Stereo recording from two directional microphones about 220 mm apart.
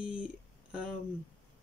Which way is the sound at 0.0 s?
5° right (ahead or behind).